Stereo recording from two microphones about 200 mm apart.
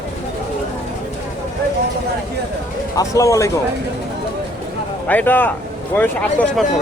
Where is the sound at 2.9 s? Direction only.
15° left (ahead or behind).